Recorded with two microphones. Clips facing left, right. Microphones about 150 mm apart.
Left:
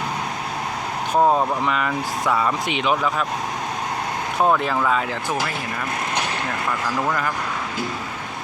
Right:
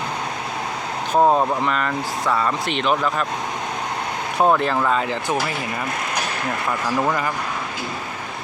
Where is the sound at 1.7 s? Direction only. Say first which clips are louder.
Even; 5° left (ahead or behind).